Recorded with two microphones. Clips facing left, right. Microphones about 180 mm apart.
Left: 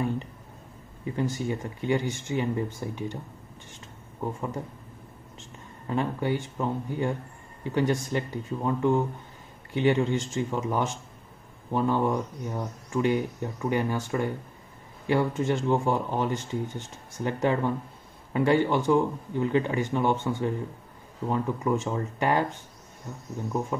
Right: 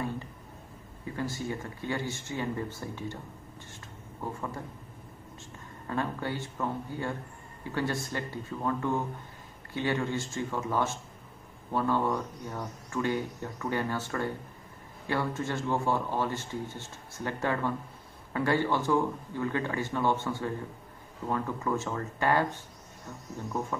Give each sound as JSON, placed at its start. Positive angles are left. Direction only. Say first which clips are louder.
{"t": 1.1, "sound": "speech", "louder": "left 5 dB", "side_deg": 20}
{"t": 5.9, "sound": "speech", "louder": "left 5 dB", "side_deg": 15}